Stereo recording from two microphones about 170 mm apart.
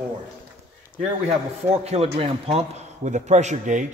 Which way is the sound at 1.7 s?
40° right (ahead or behind).